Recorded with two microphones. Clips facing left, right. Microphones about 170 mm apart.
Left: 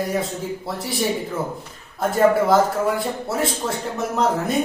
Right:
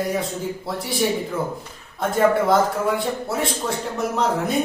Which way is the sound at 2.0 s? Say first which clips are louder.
Left 1 dB; centre (ahead or behind).